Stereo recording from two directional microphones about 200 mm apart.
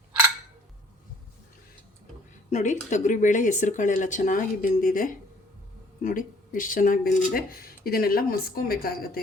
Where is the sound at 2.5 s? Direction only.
40° left (ahead or behind).